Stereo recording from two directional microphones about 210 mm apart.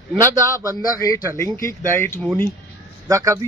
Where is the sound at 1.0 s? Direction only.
15° left (ahead or behind).